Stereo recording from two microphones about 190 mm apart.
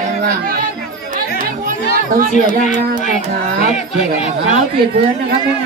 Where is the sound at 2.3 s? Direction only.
40° left (ahead or behind).